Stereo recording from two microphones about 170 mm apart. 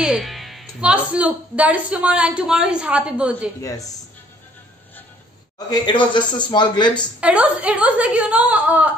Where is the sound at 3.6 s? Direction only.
20° left (ahead or behind).